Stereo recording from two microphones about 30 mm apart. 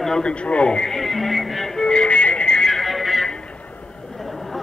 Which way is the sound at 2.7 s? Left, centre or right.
Centre.